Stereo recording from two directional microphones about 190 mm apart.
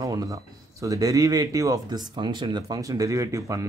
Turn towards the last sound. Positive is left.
turn(degrees=-15)  # may be behind; listen again after turning